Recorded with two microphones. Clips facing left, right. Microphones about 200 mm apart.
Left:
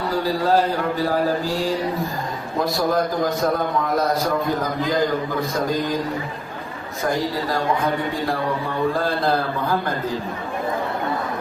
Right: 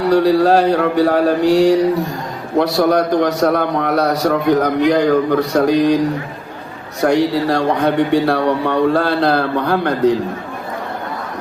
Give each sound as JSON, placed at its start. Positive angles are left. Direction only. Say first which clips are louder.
{"t": 0.0, "sound": "a man's voice", "louder": "right 10 dB", "side_deg": -75}